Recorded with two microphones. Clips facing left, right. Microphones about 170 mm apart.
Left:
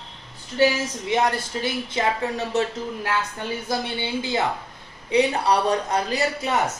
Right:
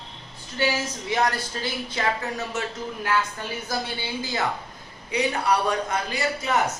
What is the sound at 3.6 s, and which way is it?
Speech, 25° left (ahead or behind).